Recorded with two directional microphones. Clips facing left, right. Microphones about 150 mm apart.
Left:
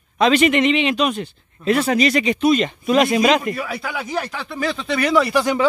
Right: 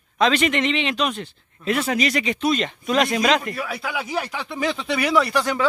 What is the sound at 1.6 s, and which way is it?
Speech, 35° left (ahead or behind).